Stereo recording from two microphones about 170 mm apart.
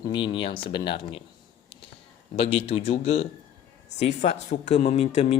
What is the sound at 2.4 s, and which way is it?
Speech, 35° left (ahead or behind).